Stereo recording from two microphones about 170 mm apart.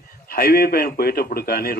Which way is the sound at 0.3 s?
60° left (ahead or behind).